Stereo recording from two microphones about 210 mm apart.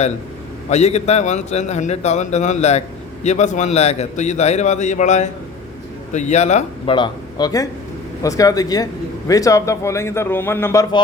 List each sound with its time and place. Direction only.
0.7 s a man's voice: 30° left (ahead or behind); by 11.0 s 15° left (ahead or behind)